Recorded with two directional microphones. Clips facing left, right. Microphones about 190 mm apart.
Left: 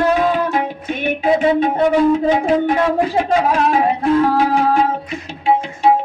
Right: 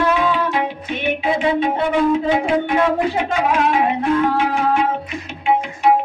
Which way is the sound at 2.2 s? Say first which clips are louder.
Left 3 dB; 40° left (ahead or behind).